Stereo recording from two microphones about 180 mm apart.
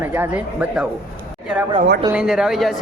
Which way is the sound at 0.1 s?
10° right (ahead or behind).